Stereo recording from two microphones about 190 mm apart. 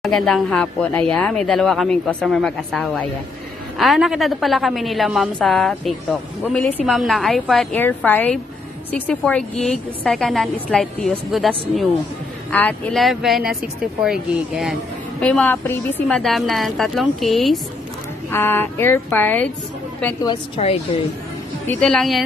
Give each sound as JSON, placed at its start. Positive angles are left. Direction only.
{"t": 0.0, "sound": "speech", "side_deg": 0}
{"t": 18.3, "sound": "speech", "side_deg": 10}
{"t": 20.2, "sound": "a woman's voice", "side_deg": 30}
{"t": 21.6, "sound": "speech", "side_deg": 5}